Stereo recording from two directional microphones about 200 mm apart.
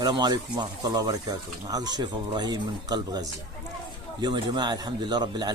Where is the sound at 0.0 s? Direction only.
20° right (ahead or behind).